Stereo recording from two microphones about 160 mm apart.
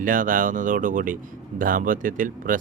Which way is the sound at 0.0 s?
55° right (ahead or behind).